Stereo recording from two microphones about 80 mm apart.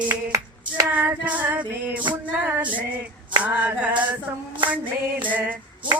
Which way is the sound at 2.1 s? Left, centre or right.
Right.